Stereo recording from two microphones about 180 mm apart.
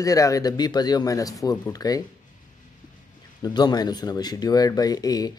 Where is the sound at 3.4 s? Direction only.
20° left (ahead or behind).